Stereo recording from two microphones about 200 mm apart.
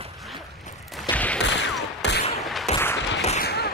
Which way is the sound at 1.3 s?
65° left (ahead or behind).